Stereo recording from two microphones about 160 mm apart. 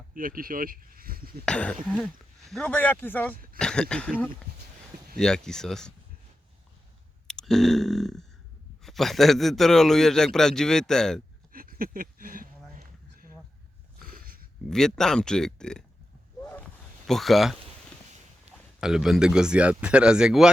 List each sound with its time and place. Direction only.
0.1 s speech: 60° right (ahead or behind)
1.5 s a man's voice: 5° left (ahead or behind)
5.1 s a man's voice: 5° left (ahead or behind)
7.3 s a sound: 5° left (ahead or behind)
8.8 s a man's voice: centre (ahead or behind)
11.5 s a sound: 65° right (ahead or behind)
14.7 s a man's voice: 5° left (ahead or behind)
16.4 s a sound: 10° left (ahead or behind)
17.1 s a man's voice: centre (ahead or behind)
18.8 s a man's voice: 5° right (ahead or behind)